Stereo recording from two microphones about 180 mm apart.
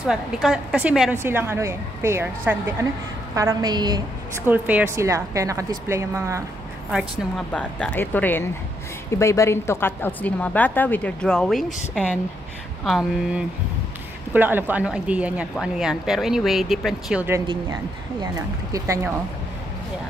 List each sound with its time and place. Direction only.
0.0 s a woman's voice: 5° right (ahead or behind); by 4.0 s 25° right (ahead or behind)
4.5 s a woman's voice: 10° right (ahead or behind)
6.9 s a woman's voice: 5° left (ahead or behind)
18.2 s speech: 20° right (ahead or behind)